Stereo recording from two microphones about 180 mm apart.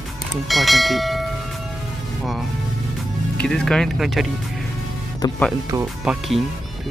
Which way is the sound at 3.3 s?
5° left (ahead or behind).